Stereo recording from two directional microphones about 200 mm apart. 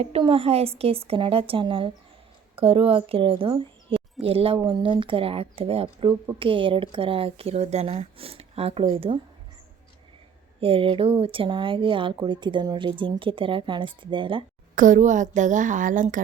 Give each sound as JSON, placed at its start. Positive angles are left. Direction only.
{"t": 0.0, "sound": "a woman's voice", "side_deg": -30}
{"t": 10.6, "sound": "a woman's voice", "side_deg": -25}
{"t": 14.8, "sound": "a woman's voice", "side_deg": -40}